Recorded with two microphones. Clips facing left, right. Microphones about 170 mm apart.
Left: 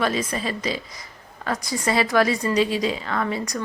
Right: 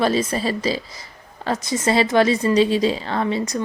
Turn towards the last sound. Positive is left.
turn(degrees=-25)  # may be behind; listen again after turning